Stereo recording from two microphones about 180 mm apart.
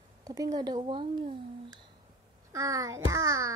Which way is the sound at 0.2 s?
20° right (ahead or behind).